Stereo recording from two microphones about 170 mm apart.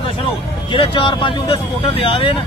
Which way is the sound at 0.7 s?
30° left (ahead or behind).